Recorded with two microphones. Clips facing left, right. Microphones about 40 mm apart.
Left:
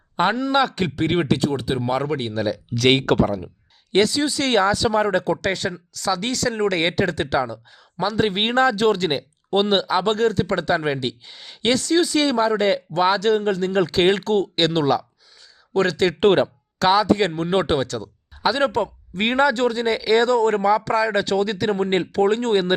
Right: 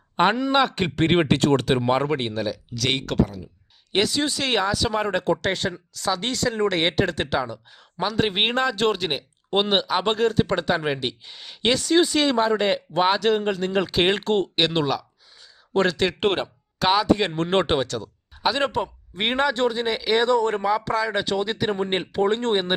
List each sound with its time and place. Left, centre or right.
0.2 s speech: centre
0.9 s speech: right
1.4 s speech: right
1.8 s speech: right
2.3 s speech: centre
2.7 s speech: left
3.9 s speech: centre
15.7 s speech: centre
16.2 s speech: centre
16.8 s speech: centre
17.5 s speech: right
17.7 s speech: centre